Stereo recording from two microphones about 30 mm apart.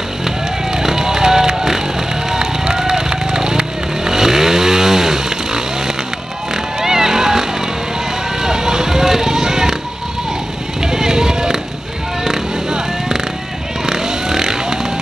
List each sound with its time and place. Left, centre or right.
0.2 s music: centre
2.3 s run: right
2.8 s vehicle: right
6.5 s a sound: centre
8.4 s vehicle: centre
10.8 s vehicle: centre